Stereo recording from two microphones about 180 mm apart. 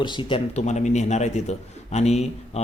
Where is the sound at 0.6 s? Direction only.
40° left (ahead or behind).